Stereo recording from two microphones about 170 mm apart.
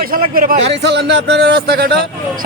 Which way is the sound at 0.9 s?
90° right.